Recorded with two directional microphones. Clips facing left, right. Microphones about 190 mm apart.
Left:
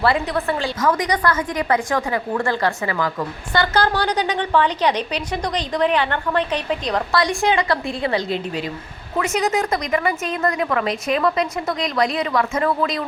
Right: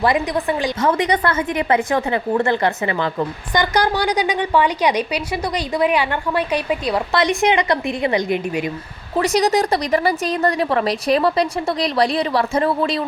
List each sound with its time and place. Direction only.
0.0 s a woman's voice: 15° right (ahead or behind)
0.8 s a woman's voice: 30° right (ahead or behind); by 7.0 s 10° right (ahead or behind)
7.1 s a woman's voice: 20° right (ahead or behind)
9.1 s a woman's voice: 35° right (ahead or behind)